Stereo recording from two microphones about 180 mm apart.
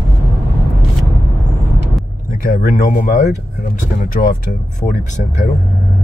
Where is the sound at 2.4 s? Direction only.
60° left (ahead or behind).